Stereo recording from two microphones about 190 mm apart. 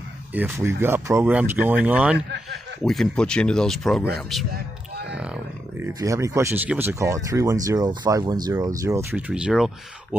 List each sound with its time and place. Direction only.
0.3 s speech: 10° right (ahead or behind)
2.1 s speech: 65° right (ahead or behind)
2.8 s speech: centre (ahead or behind); by 9.2 s 15° right (ahead or behind)
9.3 s speech: 5° right (ahead or behind)